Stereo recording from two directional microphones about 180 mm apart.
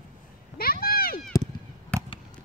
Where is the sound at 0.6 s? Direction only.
55° left (ahead or behind).